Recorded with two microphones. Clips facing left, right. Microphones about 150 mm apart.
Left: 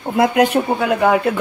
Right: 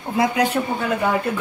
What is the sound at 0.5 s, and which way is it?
Speech, 70° left (ahead or behind).